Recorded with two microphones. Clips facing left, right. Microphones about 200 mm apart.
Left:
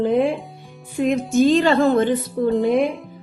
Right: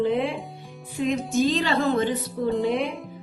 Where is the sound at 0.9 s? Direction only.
55° left (ahead or behind).